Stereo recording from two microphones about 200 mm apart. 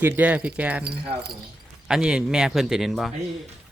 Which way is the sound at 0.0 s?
5° right (ahead or behind).